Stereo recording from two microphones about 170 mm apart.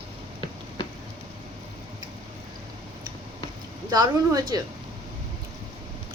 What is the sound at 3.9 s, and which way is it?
Speech, 25° right (ahead or behind).